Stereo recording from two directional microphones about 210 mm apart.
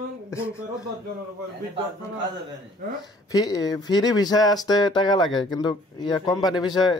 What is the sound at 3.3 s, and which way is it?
Speech, 20° left (ahead or behind).